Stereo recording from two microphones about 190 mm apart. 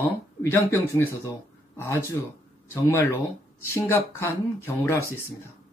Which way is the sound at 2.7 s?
10° left (ahead or behind).